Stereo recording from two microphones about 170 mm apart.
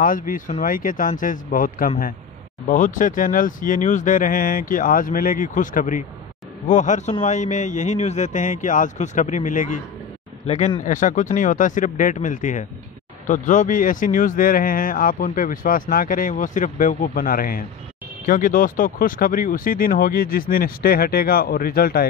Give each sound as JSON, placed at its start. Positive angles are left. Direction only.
{"t": 0.0, "sound": "speech", "side_deg": 50}
{"t": 10.4, "sound": "speech", "side_deg": 40}